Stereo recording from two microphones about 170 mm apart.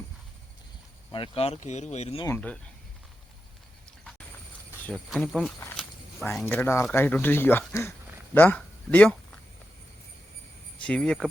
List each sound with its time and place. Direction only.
1.1 s speech: 35° left (ahead or behind)
2.2 s speech: 10° left (ahead or behind)
4.9 s speech: 5° left (ahead or behind)
6.4 s speech: 15° left (ahead or behind)
7.7 s a sound: 15° left (ahead or behind)
10.8 s speech: 5° left (ahead or behind)